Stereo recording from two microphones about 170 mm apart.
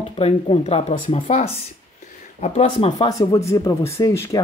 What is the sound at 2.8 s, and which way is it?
Speech, 25° left (ahead or behind).